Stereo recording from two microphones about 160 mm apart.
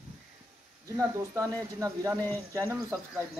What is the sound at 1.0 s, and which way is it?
Speech, 20° right (ahead or behind).